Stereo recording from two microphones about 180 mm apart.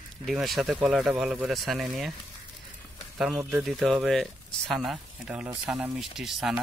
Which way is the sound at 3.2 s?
Centre (ahead or behind).